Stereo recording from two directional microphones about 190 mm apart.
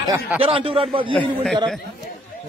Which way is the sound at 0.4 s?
30° right (ahead or behind).